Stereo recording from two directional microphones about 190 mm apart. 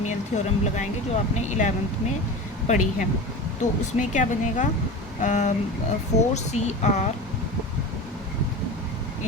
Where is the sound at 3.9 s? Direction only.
40° left (ahead or behind).